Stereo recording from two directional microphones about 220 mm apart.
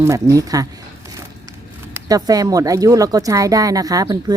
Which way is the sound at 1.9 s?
15° right (ahead or behind).